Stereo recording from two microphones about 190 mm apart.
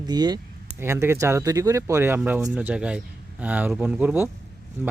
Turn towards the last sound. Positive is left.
turn(degrees=-10)  # may be behind; listen again after turning